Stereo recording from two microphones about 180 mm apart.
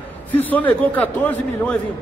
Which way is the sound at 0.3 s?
10° left (ahead or behind).